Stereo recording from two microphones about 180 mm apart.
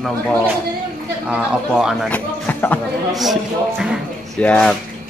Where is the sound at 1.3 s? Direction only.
5° right (ahead or behind).